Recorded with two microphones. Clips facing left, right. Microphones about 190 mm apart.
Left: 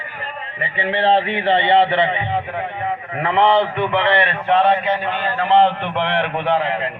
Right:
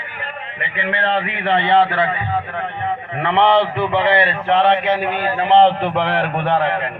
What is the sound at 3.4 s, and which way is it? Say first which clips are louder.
Speech: right 1 dB; centre (ahead or behind).